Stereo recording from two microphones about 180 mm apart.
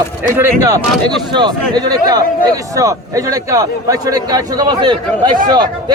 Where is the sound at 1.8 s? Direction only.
20° right (ahead or behind).